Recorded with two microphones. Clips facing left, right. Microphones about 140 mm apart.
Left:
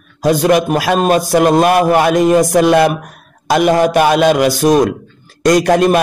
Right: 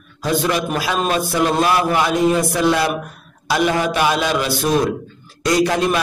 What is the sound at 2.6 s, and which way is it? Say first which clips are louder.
A man's voice: left 7 dB; 70° left (ahead or behind).